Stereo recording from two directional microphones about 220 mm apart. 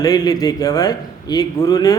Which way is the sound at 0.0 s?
15° left (ahead or behind).